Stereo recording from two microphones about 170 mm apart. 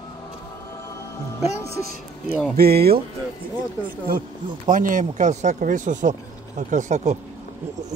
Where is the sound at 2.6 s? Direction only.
65° right (ahead or behind).